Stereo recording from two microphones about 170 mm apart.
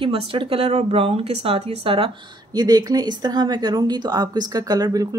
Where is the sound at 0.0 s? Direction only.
30° right (ahead or behind).